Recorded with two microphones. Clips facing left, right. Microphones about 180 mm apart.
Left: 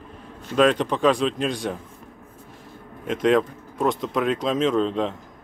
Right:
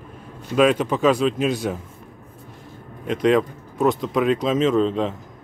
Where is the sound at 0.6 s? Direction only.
5° right (ahead or behind).